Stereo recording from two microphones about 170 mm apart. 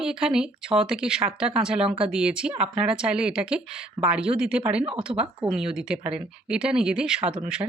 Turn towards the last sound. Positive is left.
turn(degrees=-5)  # may be behind; listen again after turning